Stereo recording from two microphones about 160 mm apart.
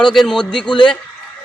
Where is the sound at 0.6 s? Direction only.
30° left (ahead or behind).